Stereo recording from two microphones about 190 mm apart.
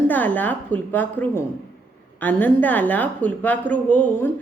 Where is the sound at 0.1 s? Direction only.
10° left (ahead or behind).